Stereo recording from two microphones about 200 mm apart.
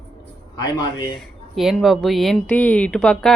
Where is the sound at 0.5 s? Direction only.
20° left (ahead or behind).